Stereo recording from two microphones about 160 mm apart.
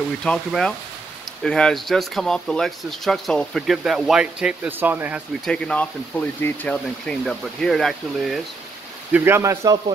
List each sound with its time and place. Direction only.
0.2 s speech: 5° left (ahead or behind)
5.4 s speech: 5° left (ahead or behind)
9.1 s speech: 15° right (ahead or behind)